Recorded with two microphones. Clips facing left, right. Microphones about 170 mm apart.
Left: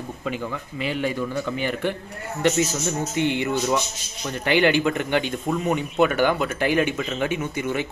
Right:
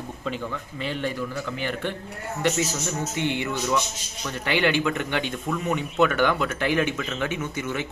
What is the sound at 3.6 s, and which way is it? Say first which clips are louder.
Speech: left 2 dB; 35° left (ahead or behind).